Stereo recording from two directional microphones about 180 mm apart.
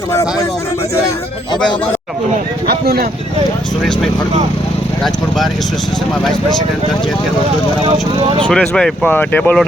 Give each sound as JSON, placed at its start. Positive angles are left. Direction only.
{"t": 0.1, "sound": "speech", "side_deg": 15}
{"t": 2.6, "sound": "speech", "side_deg": -60}
{"t": 7.9, "sound": "speech", "side_deg": -30}
{"t": 8.4, "sound": "speech", "side_deg": 5}